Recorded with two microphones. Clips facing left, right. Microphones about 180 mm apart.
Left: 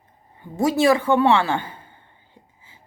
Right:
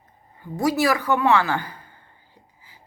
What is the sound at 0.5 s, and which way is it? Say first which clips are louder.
Speech: left 3 dB; 25° left (ahead or behind).